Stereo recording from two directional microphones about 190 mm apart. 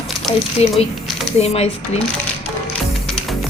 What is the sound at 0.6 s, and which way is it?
A woman's voice, 35° left (ahead or behind).